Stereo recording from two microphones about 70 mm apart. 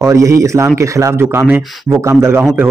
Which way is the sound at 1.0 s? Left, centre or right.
Right.